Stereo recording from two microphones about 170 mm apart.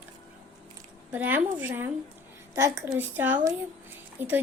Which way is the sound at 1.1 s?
10° right (ahead or behind).